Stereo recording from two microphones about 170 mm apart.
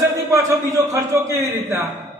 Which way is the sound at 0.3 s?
20° right (ahead or behind).